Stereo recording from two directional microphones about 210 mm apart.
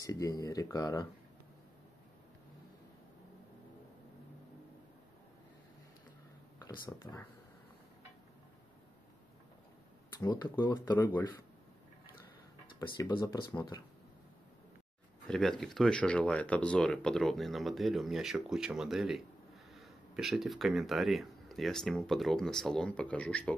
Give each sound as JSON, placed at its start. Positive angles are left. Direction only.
{"t": 0.0, "sound": "speech", "side_deg": 15}
{"t": 6.7, "sound": "speech", "side_deg": 20}
{"t": 10.2, "sound": "speech", "side_deg": 20}
{"t": 12.7, "sound": "speech", "side_deg": 20}
{"t": 15.2, "sound": "speech", "side_deg": 5}